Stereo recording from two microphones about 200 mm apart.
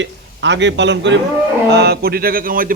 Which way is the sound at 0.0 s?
65° right (ahead or behind).